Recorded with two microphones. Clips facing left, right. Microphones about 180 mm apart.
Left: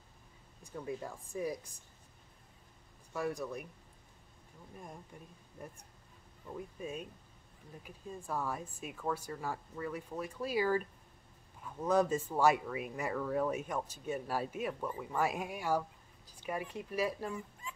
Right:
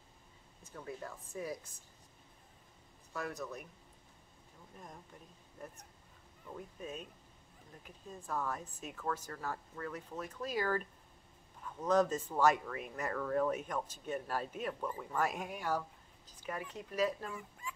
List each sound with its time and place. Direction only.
0.7 s speech: 15° left (ahead or behind)
3.1 s speech: 15° left (ahead or behind)
6.8 s speech: 10° left (ahead or behind)
11.8 s speech: 10° left (ahead or behind)
17.6 s dog: 25° left (ahead or behind)